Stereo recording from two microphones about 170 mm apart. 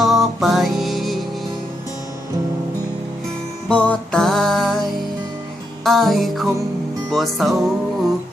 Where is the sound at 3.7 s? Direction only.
5° left (ahead or behind).